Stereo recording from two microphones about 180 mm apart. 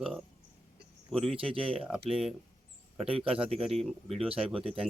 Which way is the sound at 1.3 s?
30° right (ahead or behind).